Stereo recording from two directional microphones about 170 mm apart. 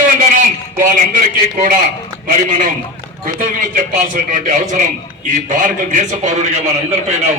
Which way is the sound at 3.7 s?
50° right (ahead or behind).